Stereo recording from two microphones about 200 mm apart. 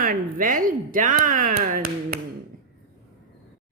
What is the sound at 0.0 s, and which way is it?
Speech, 45° right (ahead or behind).